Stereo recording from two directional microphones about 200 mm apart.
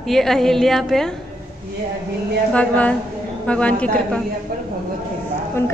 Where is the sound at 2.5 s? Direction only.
5° left (ahead or behind).